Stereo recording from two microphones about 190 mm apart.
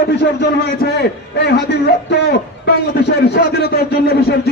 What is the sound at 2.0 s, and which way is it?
A man's voice, 60° left (ahead or behind).